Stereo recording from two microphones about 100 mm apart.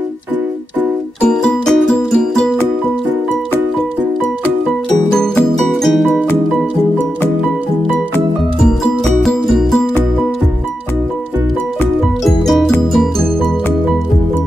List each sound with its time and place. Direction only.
1.3 s music: 5° left (ahead or behind)
5.1 s music: 5° left (ahead or behind)
9.2 s music: centre (ahead or behind)
12.3 s music: centre (ahead or behind)